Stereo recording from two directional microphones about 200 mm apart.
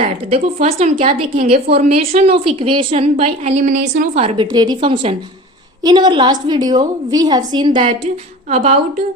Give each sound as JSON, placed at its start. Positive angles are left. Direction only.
{"t": 0.0, "sound": "a woman's voice", "side_deg": -30}